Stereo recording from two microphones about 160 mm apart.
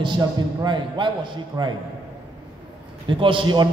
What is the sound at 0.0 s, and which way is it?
A man's voice, 30° right (ahead or behind).